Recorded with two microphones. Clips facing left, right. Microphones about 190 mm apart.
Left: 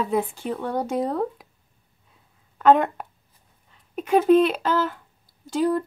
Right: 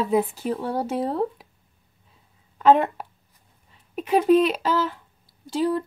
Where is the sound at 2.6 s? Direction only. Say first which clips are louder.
Even; centre (ahead or behind).